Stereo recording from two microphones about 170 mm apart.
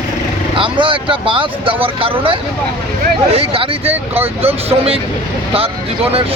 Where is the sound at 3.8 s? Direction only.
10° right (ahead or behind).